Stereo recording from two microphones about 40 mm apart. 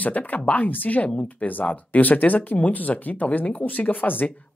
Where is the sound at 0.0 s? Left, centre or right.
Left.